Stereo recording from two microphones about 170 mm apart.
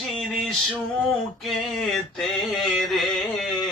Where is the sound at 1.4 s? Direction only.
Centre (ahead or behind).